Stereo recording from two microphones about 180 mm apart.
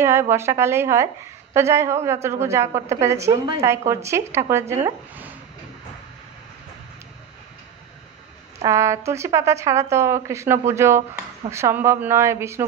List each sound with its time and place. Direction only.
0.0 s a woman's voice: 15° right (ahead or behind)
8.6 s a woman's voice: 15° right (ahead or behind)